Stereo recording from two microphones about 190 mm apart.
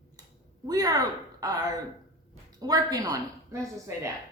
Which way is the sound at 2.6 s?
20° right (ahead or behind).